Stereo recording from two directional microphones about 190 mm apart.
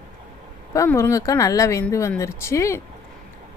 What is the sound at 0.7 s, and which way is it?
A woman's voice, 15° left (ahead or behind).